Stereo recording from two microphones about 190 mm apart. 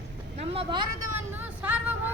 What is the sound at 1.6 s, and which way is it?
Vehicle, 10° right (ahead or behind).